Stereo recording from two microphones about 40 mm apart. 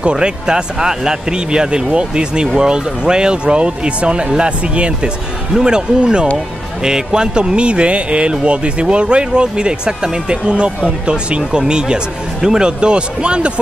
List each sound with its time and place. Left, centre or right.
0.0 s speech: right
5.5 s speech: centre